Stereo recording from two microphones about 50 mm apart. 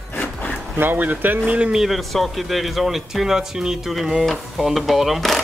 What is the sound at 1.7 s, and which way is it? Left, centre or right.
Speech, centre.